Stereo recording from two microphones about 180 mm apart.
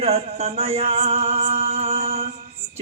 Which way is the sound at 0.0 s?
35° right (ahead or behind).